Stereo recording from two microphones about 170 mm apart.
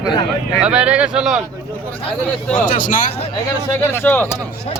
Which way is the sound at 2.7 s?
50° left (ahead or behind).